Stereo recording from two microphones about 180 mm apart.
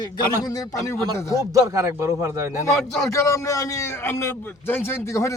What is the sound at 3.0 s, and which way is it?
A man's voice, 15° left (ahead or behind).